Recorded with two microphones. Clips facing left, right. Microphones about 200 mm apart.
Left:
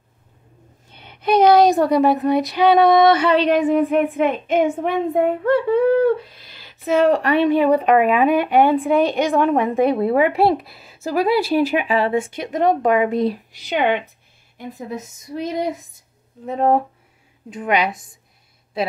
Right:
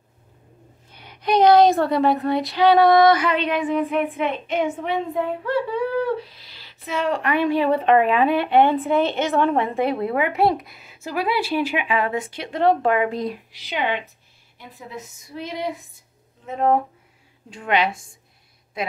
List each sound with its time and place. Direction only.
1.2 s a sound: 20° right (ahead or behind)
1.7 s speech: 15° left (ahead or behind)
2.1 s female singing: 20° left (ahead or behind); by 7.4 s 35° left (ahead or behind)
7.4 s speech: 15° left (ahead or behind)
13.3 s female singing: 45° left (ahead or behind)
14.6 s female singing: 45° left (ahead or behind)
16.4 s speech: 35° left (ahead or behind)
17.8 s speech: 20° left (ahead or behind)